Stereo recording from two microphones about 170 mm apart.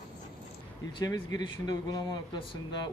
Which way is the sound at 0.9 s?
20° left (ahead or behind).